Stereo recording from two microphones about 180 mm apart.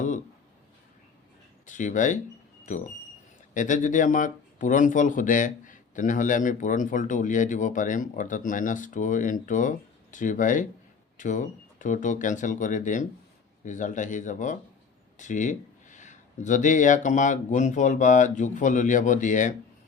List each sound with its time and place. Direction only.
1.6 s speech: 45° left (ahead or behind)
3.5 s speech: 45° left (ahead or behind)